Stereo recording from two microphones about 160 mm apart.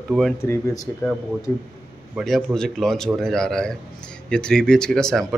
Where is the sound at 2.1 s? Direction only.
Centre (ahead or behind).